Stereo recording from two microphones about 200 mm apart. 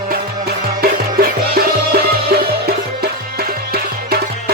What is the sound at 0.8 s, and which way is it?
Music, 50° right (ahead or behind).